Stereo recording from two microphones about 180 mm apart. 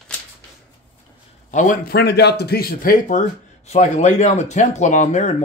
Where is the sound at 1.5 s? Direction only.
45° left (ahead or behind).